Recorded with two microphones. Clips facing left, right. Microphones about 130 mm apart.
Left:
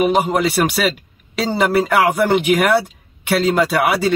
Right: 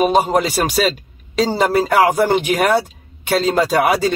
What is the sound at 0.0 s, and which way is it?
Speech, 30° right (ahead or behind).